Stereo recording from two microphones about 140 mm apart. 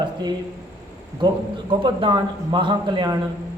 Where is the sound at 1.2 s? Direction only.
35° right (ahead or behind).